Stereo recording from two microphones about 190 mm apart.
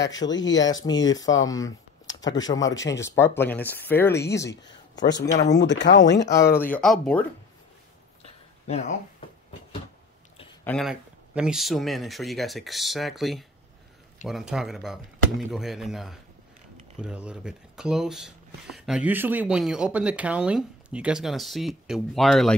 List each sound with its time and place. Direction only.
0.3 s speech: 75° left (ahead or behind)
1.4 s speech: 20° left (ahead or behind)
2.0 s a sound: 80° left
2.3 s speech: 20° left (ahead or behind)
4.6 s a sound: 70° left (ahead or behind)
5.5 s speech: 65° left (ahead or behind)
6.3 s speech: 15° left (ahead or behind)
8.6 s speech: 35° left (ahead or behind)
10.6 s a sound: 5° left (ahead or behind)
10.9 s speech: 5° right (ahead or behind)